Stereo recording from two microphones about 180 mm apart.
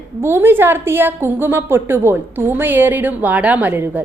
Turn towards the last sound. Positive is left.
turn(degrees=-10)  # may be behind; listen again after turning